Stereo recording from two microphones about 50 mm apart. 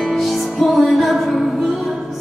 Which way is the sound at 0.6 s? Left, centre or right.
Centre.